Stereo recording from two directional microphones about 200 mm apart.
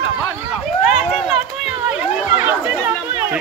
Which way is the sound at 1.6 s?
5° right (ahead or behind).